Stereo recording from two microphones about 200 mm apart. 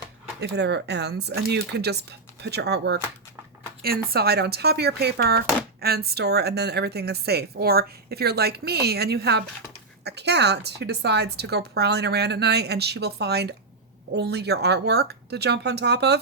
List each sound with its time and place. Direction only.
0.3 s a woman's voice: 55° right (ahead or behind)